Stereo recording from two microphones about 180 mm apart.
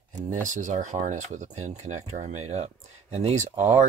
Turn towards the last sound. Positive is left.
turn(degrees=-40)  # may be behind; listen again after turning